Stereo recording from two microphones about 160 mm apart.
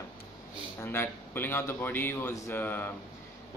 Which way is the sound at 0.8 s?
15° left (ahead or behind).